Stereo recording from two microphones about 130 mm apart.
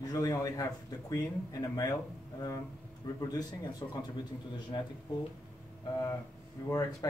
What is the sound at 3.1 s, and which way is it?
Speech, 30° left (ahead or behind).